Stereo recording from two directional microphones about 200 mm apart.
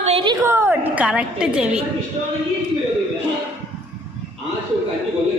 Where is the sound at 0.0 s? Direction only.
30° right (ahead or behind).